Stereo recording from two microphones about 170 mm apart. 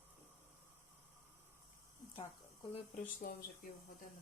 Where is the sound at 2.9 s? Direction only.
60° left (ahead or behind).